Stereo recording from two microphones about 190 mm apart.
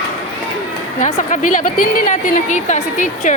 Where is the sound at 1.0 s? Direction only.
35° left (ahead or behind).